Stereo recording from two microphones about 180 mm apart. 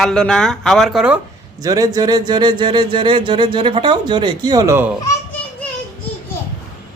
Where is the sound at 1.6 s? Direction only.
20° right (ahead or behind).